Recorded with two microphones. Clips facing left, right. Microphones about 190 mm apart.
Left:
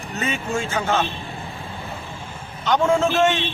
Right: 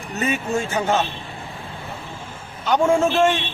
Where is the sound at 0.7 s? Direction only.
15° right (ahead or behind).